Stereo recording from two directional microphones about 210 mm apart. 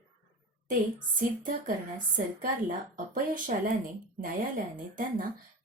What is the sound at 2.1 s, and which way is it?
A woman's voice, 40° right (ahead or behind).